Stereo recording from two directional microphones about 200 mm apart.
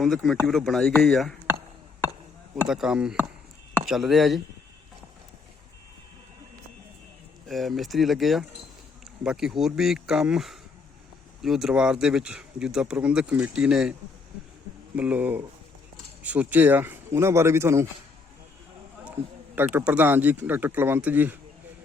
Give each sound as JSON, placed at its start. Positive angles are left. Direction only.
{"t": 0.0, "sound": "speech", "side_deg": 0}
{"t": 2.6, "sound": "speech", "side_deg": -5}
{"t": 7.4, "sound": "a sound", "side_deg": 0}
{"t": 7.8, "sound": "speech", "side_deg": 0}
{"t": 14.9, "sound": "speech", "side_deg": -5}
{"t": 19.5, "sound": "speech", "side_deg": -10}